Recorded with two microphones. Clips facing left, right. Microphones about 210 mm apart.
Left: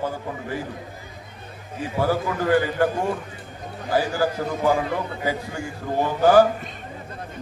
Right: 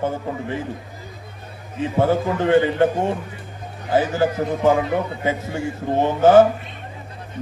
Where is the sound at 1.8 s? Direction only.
25° right (ahead or behind).